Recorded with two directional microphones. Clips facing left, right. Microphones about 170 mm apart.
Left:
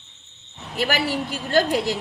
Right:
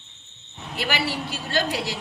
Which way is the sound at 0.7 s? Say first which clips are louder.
Left 4 dB; 45° left (ahead or behind).